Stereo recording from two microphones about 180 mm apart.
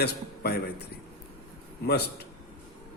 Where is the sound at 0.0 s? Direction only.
65° left (ahead or behind).